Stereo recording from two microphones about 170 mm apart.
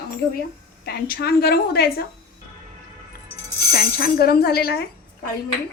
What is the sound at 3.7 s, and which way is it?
Speech, 65° left (ahead or behind).